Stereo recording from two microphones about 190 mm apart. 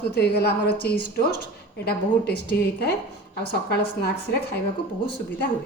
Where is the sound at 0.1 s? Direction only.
60° left (ahead or behind).